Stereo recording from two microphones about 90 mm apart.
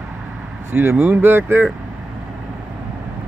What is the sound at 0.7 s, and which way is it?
Speech, 25° right (ahead or behind).